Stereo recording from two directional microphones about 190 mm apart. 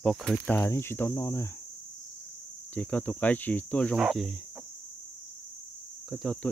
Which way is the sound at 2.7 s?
10° left (ahead or behind).